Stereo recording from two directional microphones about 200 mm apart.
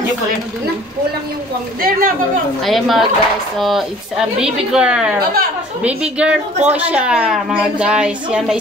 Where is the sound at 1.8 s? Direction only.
45° right (ahead or behind).